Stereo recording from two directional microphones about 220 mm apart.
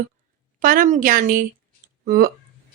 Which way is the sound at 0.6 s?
40° right (ahead or behind).